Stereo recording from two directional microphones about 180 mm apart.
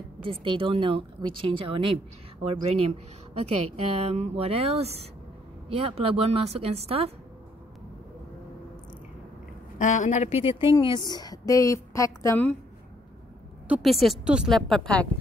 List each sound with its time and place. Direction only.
0.3 s speech: 30° right (ahead or behind)
9.8 s a woman's voice: 45° left (ahead or behind); by 12.5 s 10° left (ahead or behind)
13.7 s a woman's voice: centre (ahead or behind)